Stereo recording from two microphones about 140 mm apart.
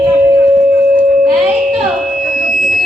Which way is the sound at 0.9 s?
5° right (ahead or behind).